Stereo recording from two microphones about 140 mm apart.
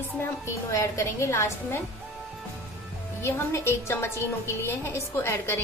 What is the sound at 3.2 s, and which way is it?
A woman's voice, 20° left (ahead or behind).